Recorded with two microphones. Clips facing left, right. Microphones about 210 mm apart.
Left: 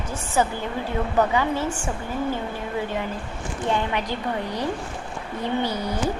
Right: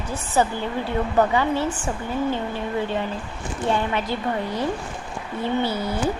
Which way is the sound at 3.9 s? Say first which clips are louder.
Right 2 dB; 15° left (ahead or behind).